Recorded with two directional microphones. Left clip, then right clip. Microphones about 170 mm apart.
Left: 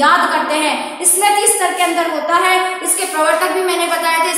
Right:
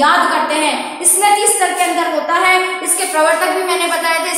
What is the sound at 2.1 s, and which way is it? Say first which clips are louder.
A woman's voice: right 2 dB; 20° left (ahead or behind).